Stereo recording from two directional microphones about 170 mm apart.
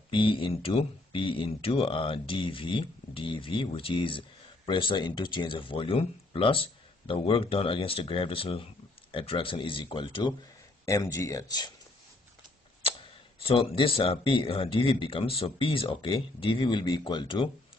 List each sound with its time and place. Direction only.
0.1 s speech: 30° left (ahead or behind)
13.4 s speech: 35° left (ahead or behind)